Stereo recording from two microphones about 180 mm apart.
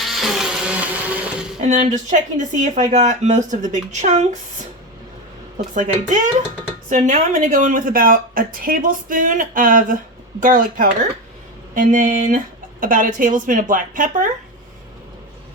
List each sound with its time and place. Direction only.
0.0 s music: centre (ahead or behind)
1.6 s speech: 40° right (ahead or behind)
5.7 s speech: 45° right (ahead or behind)